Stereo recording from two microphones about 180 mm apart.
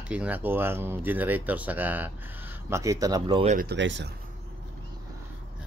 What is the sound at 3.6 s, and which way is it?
Speech, 75° right (ahead or behind).